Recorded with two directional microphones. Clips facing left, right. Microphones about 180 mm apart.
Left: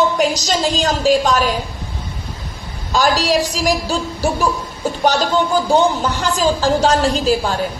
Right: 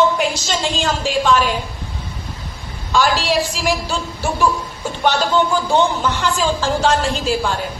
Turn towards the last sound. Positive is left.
turn(degrees=40)  # may be behind; listen again after turning